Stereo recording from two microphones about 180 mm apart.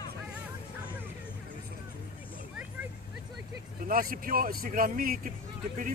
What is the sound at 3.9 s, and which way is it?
Speech, 55° right (ahead or behind).